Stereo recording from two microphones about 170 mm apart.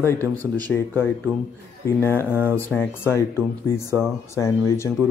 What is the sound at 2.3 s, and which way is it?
Speech, 10° right (ahead or behind).